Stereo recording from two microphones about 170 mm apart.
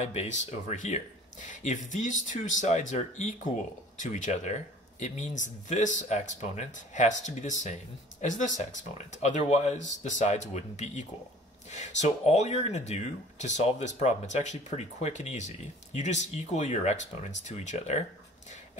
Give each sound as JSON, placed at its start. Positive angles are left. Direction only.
{"t": 0.0, "sound": "speech", "side_deg": 40}